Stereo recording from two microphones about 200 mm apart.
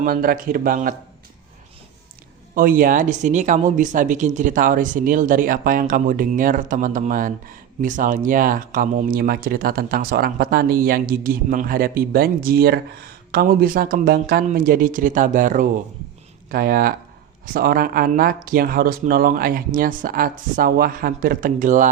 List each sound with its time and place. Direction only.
0.0 s speech: 45° right (ahead or behind)
2.6 s speech: 45° right (ahead or behind)